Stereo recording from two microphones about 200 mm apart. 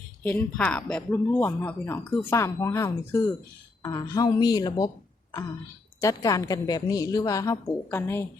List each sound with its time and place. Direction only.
0.2 s a woman's voice: 10° left (ahead or behind)
6.0 s speech: 15° left (ahead or behind)